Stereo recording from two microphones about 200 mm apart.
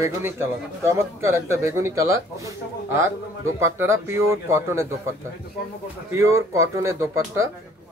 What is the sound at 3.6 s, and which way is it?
Speech, 15° right (ahead or behind).